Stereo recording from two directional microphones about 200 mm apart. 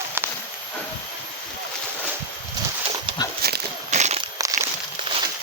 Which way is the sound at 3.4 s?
50° right (ahead or behind).